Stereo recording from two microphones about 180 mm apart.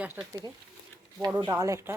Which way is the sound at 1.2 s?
25° right (ahead or behind).